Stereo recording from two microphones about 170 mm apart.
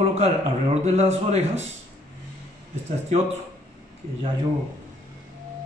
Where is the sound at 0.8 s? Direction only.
40° right (ahead or behind).